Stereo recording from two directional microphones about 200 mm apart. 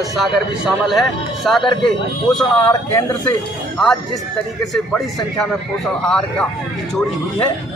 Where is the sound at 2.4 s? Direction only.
15° left (ahead or behind).